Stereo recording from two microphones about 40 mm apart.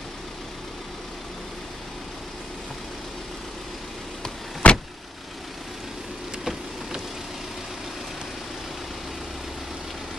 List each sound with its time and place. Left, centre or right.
4.6 s vehicle: left